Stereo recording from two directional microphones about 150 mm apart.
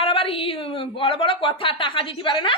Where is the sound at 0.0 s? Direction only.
35° left (ahead or behind).